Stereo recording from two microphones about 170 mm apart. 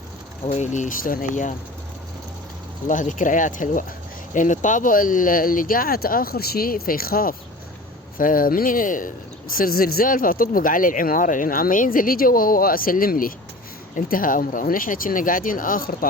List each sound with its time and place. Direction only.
0.4 s speech: 40° left (ahead or behind)
2.8 s speech: 50° left (ahead or behind)